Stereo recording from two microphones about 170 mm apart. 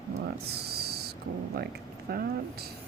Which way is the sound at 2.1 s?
60° right (ahead or behind).